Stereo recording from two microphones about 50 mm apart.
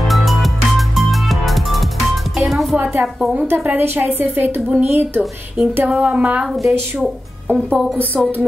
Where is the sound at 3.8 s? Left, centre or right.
Right.